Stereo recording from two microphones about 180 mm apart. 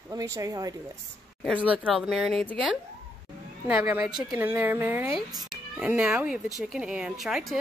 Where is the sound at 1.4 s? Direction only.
5° right (ahead or behind).